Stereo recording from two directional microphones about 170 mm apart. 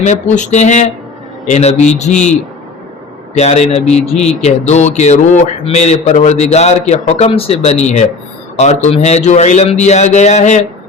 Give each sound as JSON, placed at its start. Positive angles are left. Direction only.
{"t": 0.0, "sound": "a man's voice", "side_deg": 45}
{"t": 3.3, "sound": "a man's voice", "side_deg": 40}